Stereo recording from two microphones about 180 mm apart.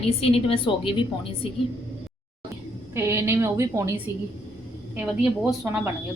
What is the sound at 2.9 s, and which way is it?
Speech, 15° right (ahead or behind).